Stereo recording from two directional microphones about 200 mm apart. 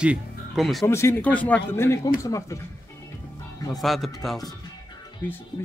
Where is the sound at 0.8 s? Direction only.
15° left (ahead or behind).